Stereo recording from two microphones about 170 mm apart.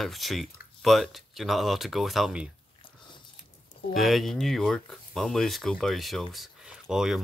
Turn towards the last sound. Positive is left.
turn(degrees=0)  # may be behind; listen again after turning